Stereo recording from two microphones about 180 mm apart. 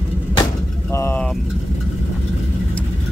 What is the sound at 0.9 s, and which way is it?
Speech, 15° left (ahead or behind).